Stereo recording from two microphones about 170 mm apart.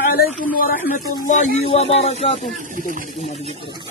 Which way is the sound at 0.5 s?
55° left (ahead or behind).